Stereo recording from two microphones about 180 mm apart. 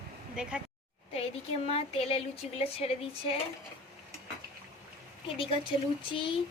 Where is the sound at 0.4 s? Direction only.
5° right (ahead or behind).